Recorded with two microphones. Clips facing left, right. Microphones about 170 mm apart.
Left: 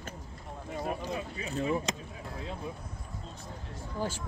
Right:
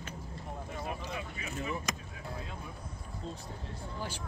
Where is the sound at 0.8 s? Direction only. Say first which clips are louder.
Left 6 dB; 35° left (ahead or behind).